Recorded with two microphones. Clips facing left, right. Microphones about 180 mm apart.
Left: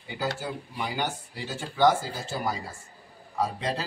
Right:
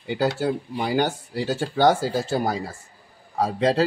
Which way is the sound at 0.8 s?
80° right.